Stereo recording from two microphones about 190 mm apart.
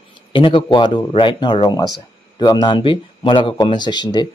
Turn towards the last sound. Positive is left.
turn(degrees=20)  # may be behind; listen again after turning